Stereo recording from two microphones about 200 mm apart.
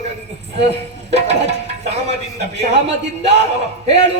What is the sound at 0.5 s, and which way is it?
Speech, 35° right (ahead or behind).